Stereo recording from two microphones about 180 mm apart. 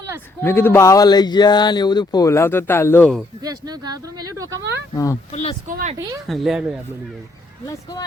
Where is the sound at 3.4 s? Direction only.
20° right (ahead or behind).